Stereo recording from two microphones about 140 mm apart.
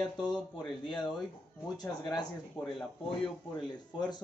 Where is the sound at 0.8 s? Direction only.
35° left (ahead or behind).